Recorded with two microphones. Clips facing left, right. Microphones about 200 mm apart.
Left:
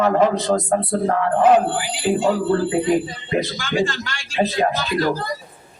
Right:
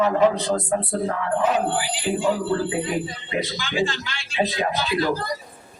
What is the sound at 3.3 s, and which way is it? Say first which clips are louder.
A man's voice: left 6 dB; 50° left (ahead or behind).